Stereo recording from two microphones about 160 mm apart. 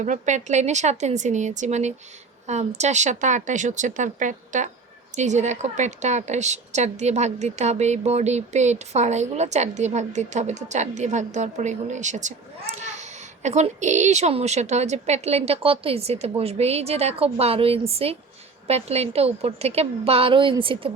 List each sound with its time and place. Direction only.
0.0 s a woman's voice: 50° right (ahead or behind); by 20.9 s 35° right (ahead or behind)